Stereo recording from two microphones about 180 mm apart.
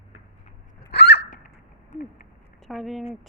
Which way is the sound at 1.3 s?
50° left (ahead or behind).